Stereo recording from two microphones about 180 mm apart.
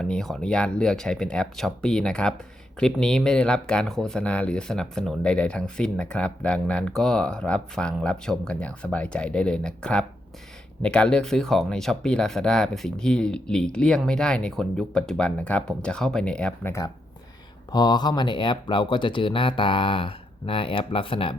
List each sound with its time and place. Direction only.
0.0 s speech: centre (ahead or behind)
17.7 s speech: 25° left (ahead or behind)